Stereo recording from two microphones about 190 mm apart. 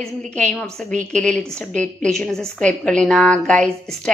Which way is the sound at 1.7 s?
40° right (ahead or behind).